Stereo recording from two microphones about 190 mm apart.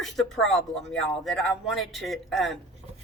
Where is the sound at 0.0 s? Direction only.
Centre (ahead or behind).